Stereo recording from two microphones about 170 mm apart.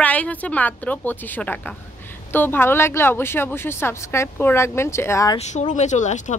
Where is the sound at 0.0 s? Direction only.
10° left (ahead or behind).